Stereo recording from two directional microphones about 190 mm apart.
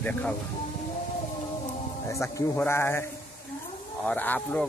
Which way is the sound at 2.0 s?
15° left (ahead or behind).